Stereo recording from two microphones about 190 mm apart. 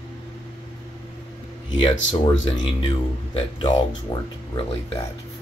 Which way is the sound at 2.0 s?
90° left.